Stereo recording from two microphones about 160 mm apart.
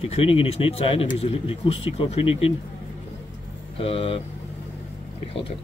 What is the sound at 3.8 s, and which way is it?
Speech, 35° left (ahead or behind).